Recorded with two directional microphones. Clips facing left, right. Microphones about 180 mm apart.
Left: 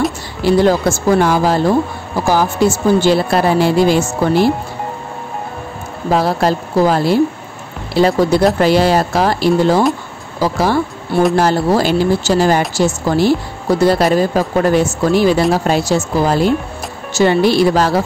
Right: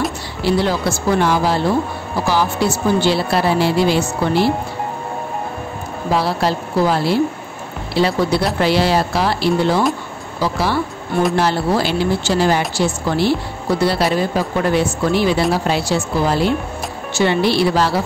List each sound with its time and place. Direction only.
0.4 s speech: 45° left (ahead or behind)
6.1 s speech: 45° left (ahead or behind)